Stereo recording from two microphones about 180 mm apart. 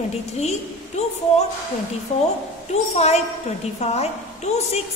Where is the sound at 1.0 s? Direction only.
40° left (ahead or behind).